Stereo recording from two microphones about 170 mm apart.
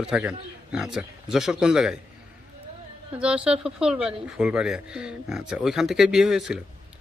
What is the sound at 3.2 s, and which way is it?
A man's voice, 5° right (ahead or behind).